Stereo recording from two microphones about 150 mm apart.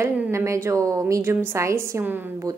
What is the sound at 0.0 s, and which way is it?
A woman's voice, 20° right (ahead or behind).